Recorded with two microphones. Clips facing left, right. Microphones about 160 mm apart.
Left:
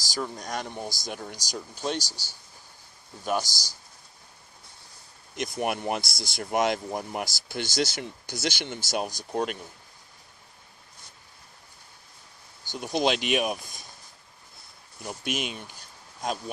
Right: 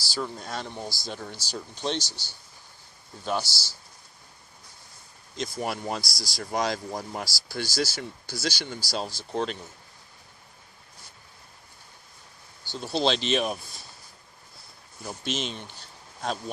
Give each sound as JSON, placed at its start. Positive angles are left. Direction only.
{"t": 0.4, "sound": "speech", "side_deg": 15}
{"t": 3.2, "sound": "speech", "side_deg": 15}
{"t": 5.3, "sound": "speech", "side_deg": 20}
{"t": 12.7, "sound": "speech", "side_deg": 15}
{"t": 15.0, "sound": "speech", "side_deg": 10}